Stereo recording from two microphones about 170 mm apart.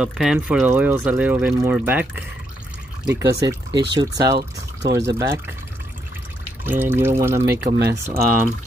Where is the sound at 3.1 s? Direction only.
20° right (ahead or behind).